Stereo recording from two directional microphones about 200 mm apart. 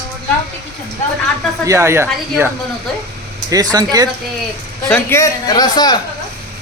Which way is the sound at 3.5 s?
20° right (ahead or behind).